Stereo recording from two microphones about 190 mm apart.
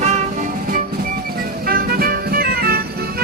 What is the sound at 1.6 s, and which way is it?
Music, 50° right (ahead or behind).